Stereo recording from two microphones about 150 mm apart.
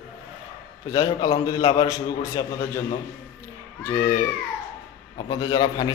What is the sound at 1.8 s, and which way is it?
Speech, 20° left (ahead or behind).